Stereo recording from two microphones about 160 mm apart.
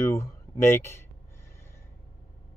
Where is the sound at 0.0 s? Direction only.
15° left (ahead or behind).